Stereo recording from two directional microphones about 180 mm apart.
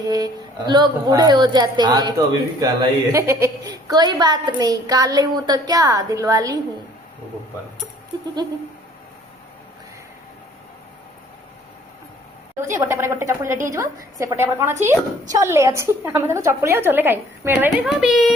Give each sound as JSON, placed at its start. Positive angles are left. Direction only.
{"t": 0.0, "sound": "a woman's voice", "side_deg": -20}
{"t": 12.9, "sound": "a woman's voice", "side_deg": -15}